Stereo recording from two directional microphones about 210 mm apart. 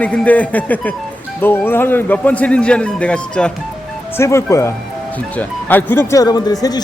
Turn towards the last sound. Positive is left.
turn(degrees=20)  # may be behind; listen again after turning